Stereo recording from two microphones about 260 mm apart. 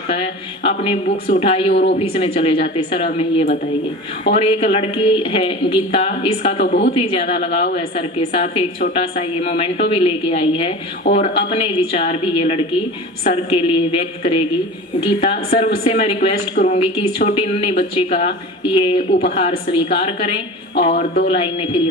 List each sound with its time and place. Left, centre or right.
0.1 s a woman's voice: left
1.7 s speech: left
2.0 s a woman's voice: left
6.6 s speech: left
6.9 s a woman's voice: left
20.9 s speech: left
21.3 s a woman's voice: left